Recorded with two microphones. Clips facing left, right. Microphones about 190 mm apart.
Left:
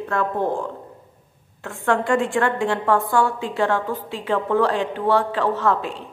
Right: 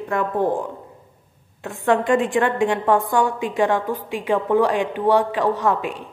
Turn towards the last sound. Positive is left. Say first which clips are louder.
# right 1 dB
turn(degrees=-15)  # may be behind; listen again after turning